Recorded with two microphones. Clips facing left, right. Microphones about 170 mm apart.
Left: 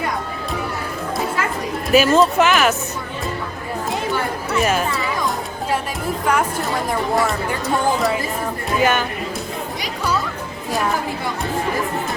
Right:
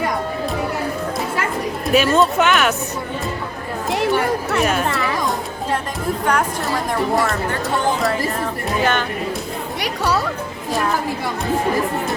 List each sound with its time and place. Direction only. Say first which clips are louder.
1.9 s speech: left 2 dB; centre (ahead or behind)
4.6 s speech: left 2 dB; centre (ahead or behind)
6.2 s speech: left 1 dB; 5° left (ahead or behind)
8.8 s speech: left 2 dB; 10° left (ahead or behind)
9.8 s speech: right 3 dB; 70° right (ahead or behind)